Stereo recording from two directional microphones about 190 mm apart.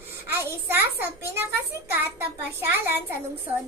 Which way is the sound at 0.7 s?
10° right (ahead or behind).